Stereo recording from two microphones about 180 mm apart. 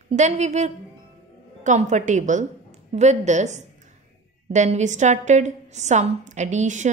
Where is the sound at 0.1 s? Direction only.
40° right (ahead or behind).